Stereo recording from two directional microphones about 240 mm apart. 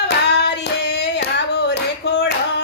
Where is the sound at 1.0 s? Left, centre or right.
Left.